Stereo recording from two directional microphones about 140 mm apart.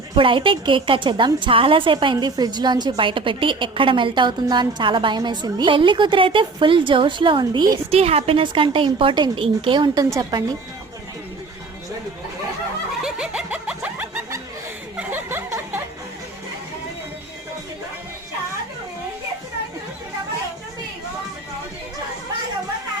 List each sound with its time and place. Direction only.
0.2 s a woman's voice: 35° right (ahead or behind)
7.9 s a woman's voice: 45° right (ahead or behind); by 10.4 s 25° right (ahead or behind)
13.0 s snicker: 5° right (ahead or behind)
14.9 s chuckle: 15° right (ahead or behind)